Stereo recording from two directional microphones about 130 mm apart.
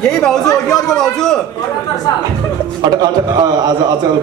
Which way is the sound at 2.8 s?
35° right (ahead or behind).